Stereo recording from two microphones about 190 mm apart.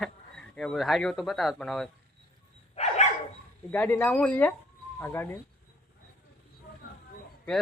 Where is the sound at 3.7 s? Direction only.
10° left (ahead or behind).